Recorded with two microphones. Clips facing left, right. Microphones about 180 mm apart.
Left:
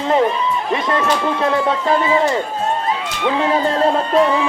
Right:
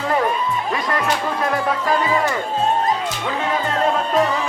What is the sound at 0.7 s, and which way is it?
Speech, 25° left (ahead or behind).